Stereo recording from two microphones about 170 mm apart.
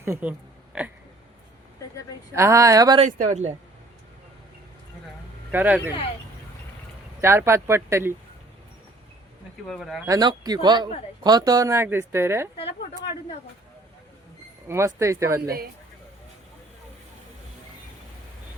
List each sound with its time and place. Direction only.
0.0 s a sound: 15° right (ahead or behind)
2.3 s speech: 15° right (ahead or behind)
3.0 s speech: 50° right (ahead or behind)
5.5 s speech: 10° right (ahead or behind)
7.2 s speech: 15° right (ahead or behind)
9.6 s speech: centre (ahead or behind)
10.1 s speech: 25° right (ahead or behind)
14.7 s speech: 15° right (ahead or behind)